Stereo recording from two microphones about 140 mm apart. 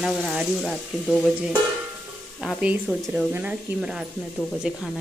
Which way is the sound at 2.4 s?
5° right (ahead or behind).